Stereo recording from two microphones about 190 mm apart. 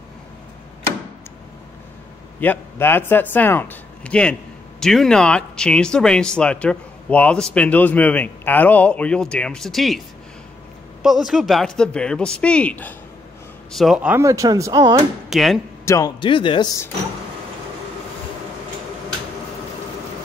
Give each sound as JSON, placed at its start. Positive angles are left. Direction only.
{"t": 2.4, "sound": "speech", "side_deg": 10}
{"t": 15.2, "sound": "speech", "side_deg": 0}
{"t": 15.8, "sound": "a man's voice", "side_deg": 15}
{"t": 16.2, "sound": "speech", "side_deg": 25}